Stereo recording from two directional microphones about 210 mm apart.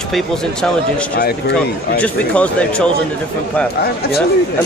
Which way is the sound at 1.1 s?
50° left (ahead or behind).